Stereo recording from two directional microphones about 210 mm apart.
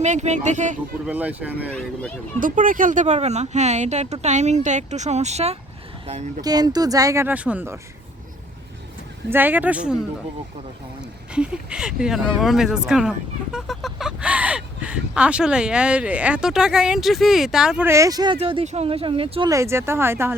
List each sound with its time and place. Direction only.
0.0 s speech: 35° right (ahead or behind)
1.0 s speech: 5° right (ahead or behind)
1.7 s speech: 5° left (ahead or behind)
2.4 s speech: 40° right (ahead or behind)
6.4 s speech: 20° right (ahead or behind)
9.3 s speech: 10° right (ahead or behind)
11.0 s speech: 5° right (ahead or behind)